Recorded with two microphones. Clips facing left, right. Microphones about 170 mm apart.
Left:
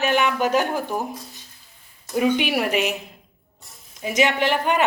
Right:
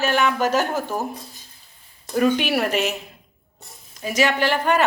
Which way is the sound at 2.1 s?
10° left (ahead or behind).